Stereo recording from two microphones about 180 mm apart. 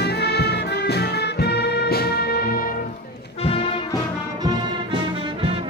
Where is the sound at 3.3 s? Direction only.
30° left (ahead or behind).